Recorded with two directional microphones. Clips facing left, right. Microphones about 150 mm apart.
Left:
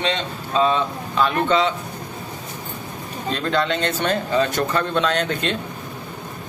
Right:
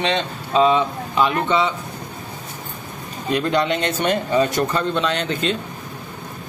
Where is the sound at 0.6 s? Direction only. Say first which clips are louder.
Right 3 dB; 15° right (ahead or behind).